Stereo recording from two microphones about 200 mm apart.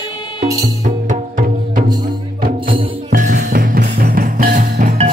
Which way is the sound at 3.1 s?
40° right (ahead or behind).